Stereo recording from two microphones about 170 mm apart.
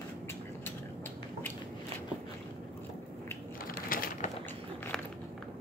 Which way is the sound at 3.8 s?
55° left (ahead or behind).